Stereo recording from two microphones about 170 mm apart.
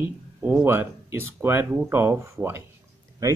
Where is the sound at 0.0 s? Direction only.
10° right (ahead or behind).